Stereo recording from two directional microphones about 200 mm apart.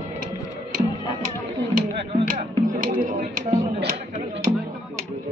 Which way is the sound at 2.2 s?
40° right (ahead or behind).